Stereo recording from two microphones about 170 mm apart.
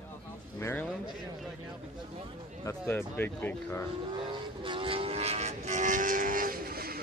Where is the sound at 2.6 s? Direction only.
10° left (ahead or behind).